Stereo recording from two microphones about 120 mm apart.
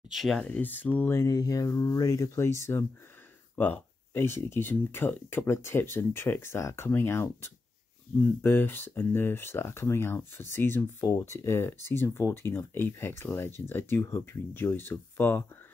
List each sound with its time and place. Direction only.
0.1 s speech: centre (ahead or behind)
0.6 s speech: 15° left (ahead or behind)
1.2 s speech: 30° left (ahead or behind)